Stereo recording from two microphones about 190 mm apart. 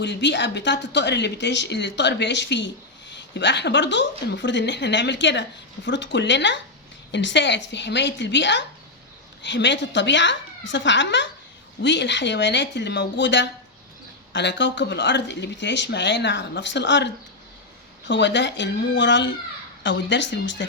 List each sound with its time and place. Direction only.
0.0 s speech: 65° left (ahead or behind)